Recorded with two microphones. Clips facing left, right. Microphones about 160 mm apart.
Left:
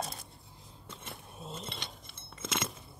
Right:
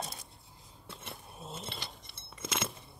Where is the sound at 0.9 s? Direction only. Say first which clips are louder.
Even; centre (ahead or behind).